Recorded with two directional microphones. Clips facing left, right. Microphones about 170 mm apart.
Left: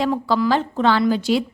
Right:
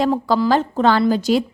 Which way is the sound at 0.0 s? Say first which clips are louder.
Right 2 dB; 45° right (ahead or behind).